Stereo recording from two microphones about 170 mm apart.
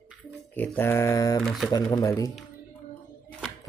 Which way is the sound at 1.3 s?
Centre (ahead or behind).